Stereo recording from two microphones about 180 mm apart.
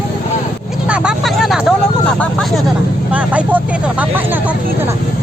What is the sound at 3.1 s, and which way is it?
Vehicle, 10° right (ahead or behind).